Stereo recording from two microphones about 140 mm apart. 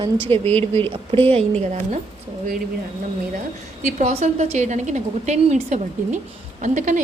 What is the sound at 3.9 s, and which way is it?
A woman's voice, 55° right (ahead or behind).